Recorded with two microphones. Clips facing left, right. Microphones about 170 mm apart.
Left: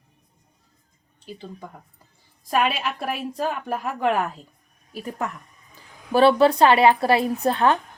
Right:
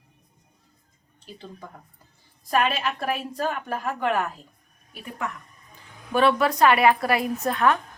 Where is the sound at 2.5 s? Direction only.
10° left (ahead or behind).